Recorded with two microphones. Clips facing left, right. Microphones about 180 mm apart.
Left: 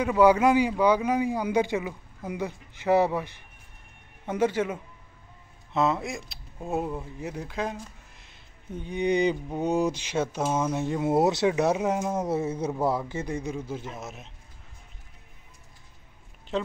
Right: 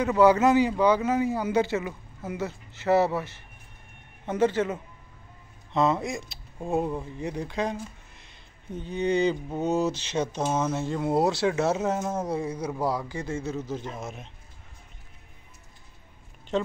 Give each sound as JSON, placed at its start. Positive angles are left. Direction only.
{"t": 0.0, "sound": "a man's voice", "side_deg": 10}
{"t": 8.8, "sound": "a man's voice", "side_deg": 15}
{"t": 16.5, "sound": "a woman's voice", "side_deg": 0}